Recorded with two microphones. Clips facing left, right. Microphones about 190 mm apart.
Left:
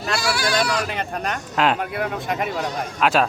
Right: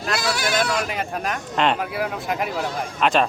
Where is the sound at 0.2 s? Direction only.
20° right (ahead or behind).